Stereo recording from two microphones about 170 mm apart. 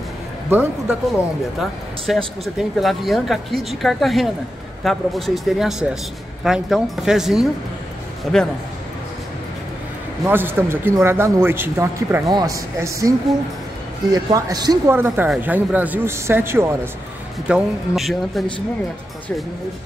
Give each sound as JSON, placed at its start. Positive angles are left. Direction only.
{"t": 0.5, "sound": "a man's voice", "side_deg": -10}
{"t": 1.6, "sound": "speech", "side_deg": 0}
{"t": 10.2, "sound": "a man's voice", "side_deg": -15}
{"t": 14.1, "sound": "a man's voice", "side_deg": -25}
{"t": 17.5, "sound": "speech", "side_deg": -5}